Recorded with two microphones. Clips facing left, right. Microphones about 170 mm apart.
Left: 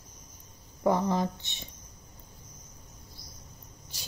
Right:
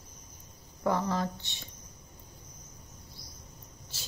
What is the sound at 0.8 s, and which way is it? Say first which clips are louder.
Speech: left 3 dB; 15° left (ahead or behind).